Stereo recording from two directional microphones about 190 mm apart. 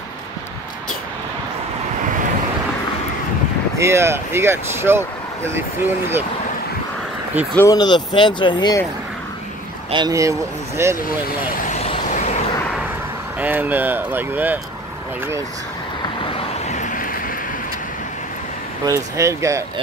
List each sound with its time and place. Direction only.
3.7 s speech: 15° right (ahead or behind)
7.5 s speech: 20° left (ahead or behind)
9.8 s speech: 20° right (ahead or behind)
11.2 s vehicle: 45° left (ahead or behind)
13.4 s speech: 10° right (ahead or behind)
16.3 s vehicle: 40° left (ahead or behind)
18.9 s speech: 15° right (ahead or behind)